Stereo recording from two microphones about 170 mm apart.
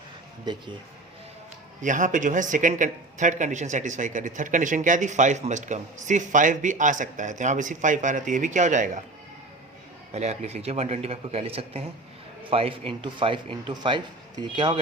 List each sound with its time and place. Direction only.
1.8 s speech: 50° right (ahead or behind)
10.1 s a man's voice: 40° right (ahead or behind)